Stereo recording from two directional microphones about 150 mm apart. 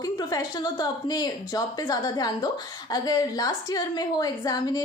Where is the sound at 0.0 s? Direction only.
25° left (ahead or behind).